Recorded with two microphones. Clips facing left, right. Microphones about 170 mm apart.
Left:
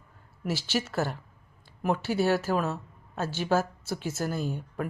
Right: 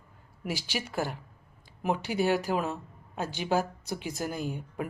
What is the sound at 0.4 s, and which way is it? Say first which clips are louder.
Speech: left 4 dB; 10° right (ahead or behind).